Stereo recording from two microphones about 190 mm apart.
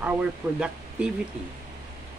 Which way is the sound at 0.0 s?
5° right (ahead or behind).